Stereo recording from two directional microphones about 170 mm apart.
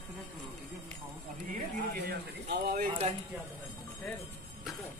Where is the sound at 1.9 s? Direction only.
70° right (ahead or behind).